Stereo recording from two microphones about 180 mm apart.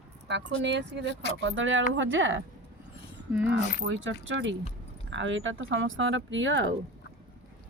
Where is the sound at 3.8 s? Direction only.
90° right.